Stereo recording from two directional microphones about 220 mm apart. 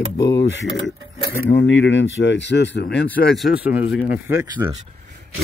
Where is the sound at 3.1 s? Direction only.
Centre (ahead or behind).